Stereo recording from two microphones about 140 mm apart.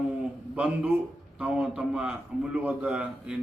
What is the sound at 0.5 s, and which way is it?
A man's voice, 10° right (ahead or behind).